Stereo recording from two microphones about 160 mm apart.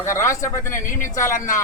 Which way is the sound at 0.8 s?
55° left (ahead or behind).